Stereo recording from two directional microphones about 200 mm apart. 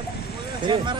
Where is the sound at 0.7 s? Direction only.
20° right (ahead or behind).